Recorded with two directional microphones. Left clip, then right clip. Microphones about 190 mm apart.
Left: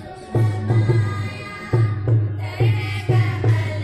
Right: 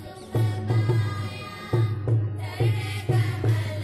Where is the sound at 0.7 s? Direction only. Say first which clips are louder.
Left 5 dB; 25° right (ahead or behind).